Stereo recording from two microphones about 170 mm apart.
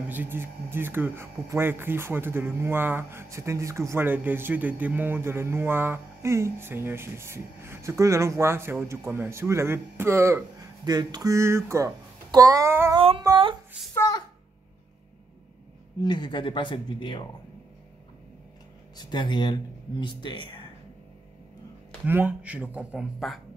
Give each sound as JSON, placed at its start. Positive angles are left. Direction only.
{"t": 0.1, "sound": "speech", "side_deg": -10}
{"t": 12.9, "sound": "humming", "side_deg": -35}
{"t": 13.9, "sound": "a sound", "side_deg": 20}
{"t": 16.0, "sound": "speech", "side_deg": 25}
{"t": 18.9, "sound": "speech", "side_deg": 25}
{"t": 22.0, "sound": "speech", "side_deg": -10}